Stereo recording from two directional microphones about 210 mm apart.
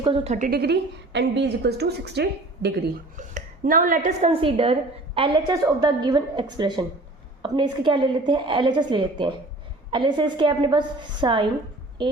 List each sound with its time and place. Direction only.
0.0 s a woman's voice: 25° right (ahead or behind)
0.3 s a woman's voice: 45° right (ahead or behind)
3.2 s a woman's voice: 35° right (ahead or behind); by 11.4 s 20° right (ahead or behind)